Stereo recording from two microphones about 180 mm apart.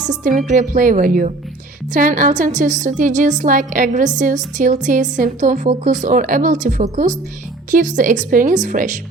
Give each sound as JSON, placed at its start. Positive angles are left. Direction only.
{"t": 0.1, "sound": "a woman's voice", "side_deg": -45}